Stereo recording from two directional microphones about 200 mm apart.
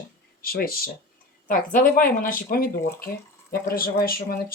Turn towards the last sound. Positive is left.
turn(degrees=50)  # may be behind; listen again after turning